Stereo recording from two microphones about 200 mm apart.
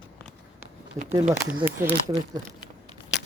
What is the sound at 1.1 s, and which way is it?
Speech, 30° right (ahead or behind).